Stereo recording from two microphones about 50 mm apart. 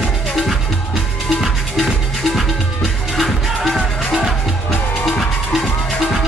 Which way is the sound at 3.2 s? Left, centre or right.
Centre.